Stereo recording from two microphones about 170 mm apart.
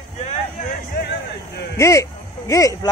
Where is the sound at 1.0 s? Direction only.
65° left (ahead or behind).